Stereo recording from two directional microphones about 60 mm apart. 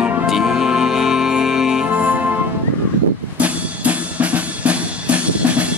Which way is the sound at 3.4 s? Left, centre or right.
Right.